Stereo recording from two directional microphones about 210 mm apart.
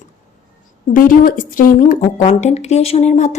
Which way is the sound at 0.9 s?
40° left (ahead or behind).